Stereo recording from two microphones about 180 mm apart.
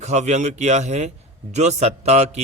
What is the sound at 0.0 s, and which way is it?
A man's voice, 40° right (ahead or behind).